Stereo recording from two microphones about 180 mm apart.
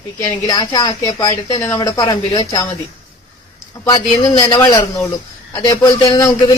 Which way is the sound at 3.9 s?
25° left (ahead or behind).